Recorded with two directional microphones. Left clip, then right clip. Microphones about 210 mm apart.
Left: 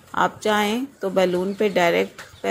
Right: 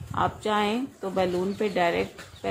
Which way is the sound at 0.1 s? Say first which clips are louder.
Left 5 dB; 15° left (ahead or behind).